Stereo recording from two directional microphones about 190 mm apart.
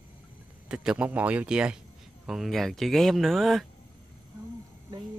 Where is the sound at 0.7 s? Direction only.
5° right (ahead or behind).